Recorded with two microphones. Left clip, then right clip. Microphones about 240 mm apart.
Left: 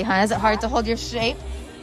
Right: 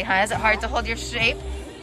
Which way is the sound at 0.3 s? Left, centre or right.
Left.